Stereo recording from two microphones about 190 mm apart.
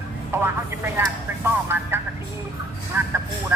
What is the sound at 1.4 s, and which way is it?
Vehicle, 10° right (ahead or behind).